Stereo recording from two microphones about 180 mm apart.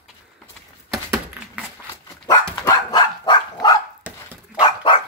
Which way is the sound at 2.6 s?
20° left (ahead or behind).